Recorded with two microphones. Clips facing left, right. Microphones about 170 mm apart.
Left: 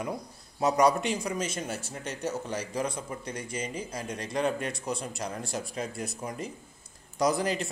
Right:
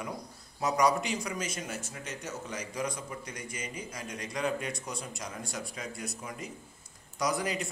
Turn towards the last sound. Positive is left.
turn(degrees=30)  # may be behind; listen again after turning